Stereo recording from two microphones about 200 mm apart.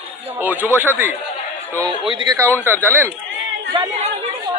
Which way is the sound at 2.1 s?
20° right (ahead or behind).